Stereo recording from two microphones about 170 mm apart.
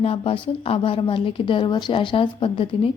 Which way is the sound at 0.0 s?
35° left (ahead or behind).